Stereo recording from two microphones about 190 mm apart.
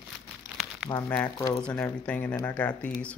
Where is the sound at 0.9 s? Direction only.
10° left (ahead or behind).